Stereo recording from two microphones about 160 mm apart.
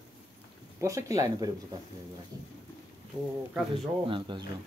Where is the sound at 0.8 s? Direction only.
20° right (ahead or behind).